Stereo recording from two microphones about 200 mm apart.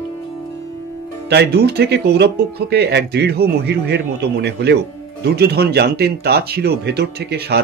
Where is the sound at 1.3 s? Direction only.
55° right (ahead or behind).